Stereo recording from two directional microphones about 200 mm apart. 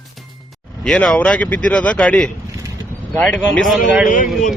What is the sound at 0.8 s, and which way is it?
Speech, 5° left (ahead or behind).